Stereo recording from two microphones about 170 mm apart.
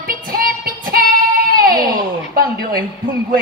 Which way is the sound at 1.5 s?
60° right (ahead or behind).